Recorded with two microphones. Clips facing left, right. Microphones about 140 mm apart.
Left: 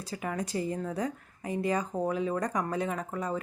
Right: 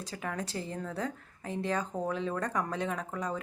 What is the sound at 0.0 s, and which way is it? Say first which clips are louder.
Speech: left 3 dB; 5° left (ahead or behind).